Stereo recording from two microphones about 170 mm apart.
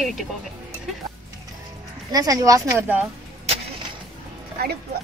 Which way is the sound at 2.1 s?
20° right (ahead or behind).